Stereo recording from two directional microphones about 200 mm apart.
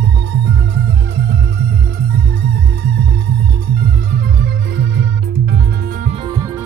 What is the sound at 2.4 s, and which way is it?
Music, 55° right (ahead or behind).